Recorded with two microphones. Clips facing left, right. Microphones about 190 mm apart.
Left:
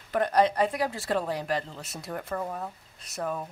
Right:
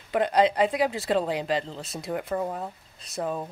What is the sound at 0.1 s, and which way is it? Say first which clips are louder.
Speech: right 2 dB; 15° right (ahead or behind).